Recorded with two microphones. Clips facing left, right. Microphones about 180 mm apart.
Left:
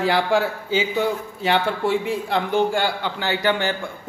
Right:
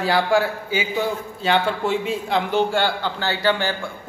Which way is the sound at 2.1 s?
15° right (ahead or behind).